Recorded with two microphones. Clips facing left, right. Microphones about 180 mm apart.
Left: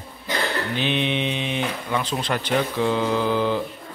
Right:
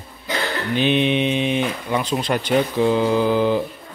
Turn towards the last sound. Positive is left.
turn(degrees=-15)  # may be behind; listen again after turning